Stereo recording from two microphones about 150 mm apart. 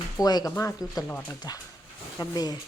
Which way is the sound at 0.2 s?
25° left (ahead or behind).